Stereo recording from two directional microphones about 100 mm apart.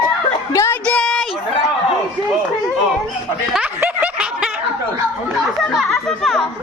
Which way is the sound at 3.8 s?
10° right (ahead or behind).